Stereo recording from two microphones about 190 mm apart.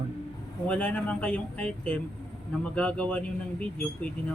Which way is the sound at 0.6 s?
5° left (ahead or behind).